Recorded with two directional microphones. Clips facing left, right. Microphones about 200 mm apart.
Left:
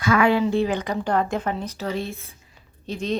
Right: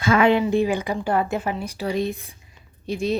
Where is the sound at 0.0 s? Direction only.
25° right (ahead or behind).